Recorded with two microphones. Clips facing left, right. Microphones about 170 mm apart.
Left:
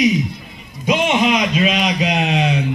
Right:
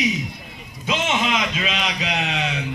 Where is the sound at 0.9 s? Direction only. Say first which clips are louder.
Left 7 dB; 15° left (ahead or behind).